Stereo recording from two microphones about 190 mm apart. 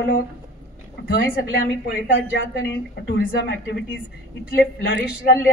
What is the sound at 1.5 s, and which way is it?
Speech, 65° left (ahead or behind).